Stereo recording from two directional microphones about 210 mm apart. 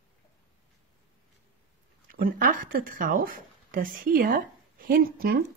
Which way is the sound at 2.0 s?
45° right (ahead or behind).